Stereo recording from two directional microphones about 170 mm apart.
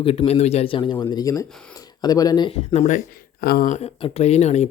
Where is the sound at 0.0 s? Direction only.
35° left (ahead or behind).